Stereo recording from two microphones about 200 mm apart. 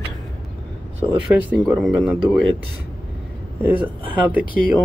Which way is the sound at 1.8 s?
5° right (ahead or behind).